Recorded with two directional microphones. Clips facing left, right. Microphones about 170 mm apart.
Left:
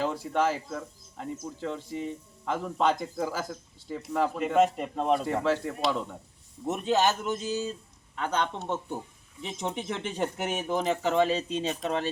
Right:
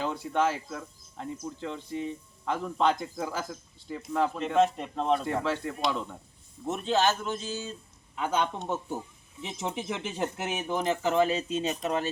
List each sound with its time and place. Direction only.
0.0 s speech: centre (ahead or behind)
6.7 s a man's voice: 15° left (ahead or behind)
8.1 s speech: 10° right (ahead or behind)